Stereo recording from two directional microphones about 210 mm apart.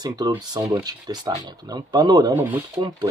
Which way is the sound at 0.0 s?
20° right (ahead or behind).